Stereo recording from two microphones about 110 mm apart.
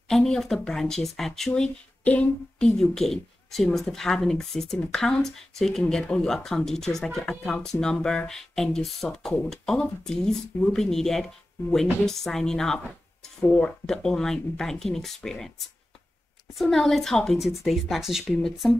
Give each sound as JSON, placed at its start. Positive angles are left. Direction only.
{"t": 0.1, "sound": "speech", "side_deg": 5}